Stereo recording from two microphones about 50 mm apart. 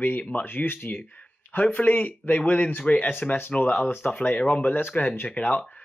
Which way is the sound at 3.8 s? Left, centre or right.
Left.